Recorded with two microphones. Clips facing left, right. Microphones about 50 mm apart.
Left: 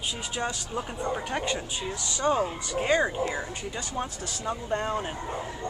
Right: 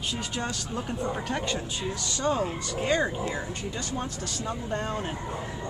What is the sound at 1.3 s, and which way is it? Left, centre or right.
A woman's voice, centre.